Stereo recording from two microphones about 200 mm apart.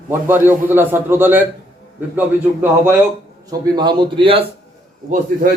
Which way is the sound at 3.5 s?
20° right (ahead or behind).